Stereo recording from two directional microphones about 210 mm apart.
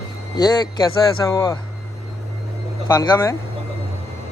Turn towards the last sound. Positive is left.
turn(degrees=15)  # may be behind; listen again after turning